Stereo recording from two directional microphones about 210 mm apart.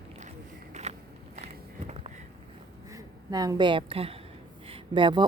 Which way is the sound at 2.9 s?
15° right (ahead or behind).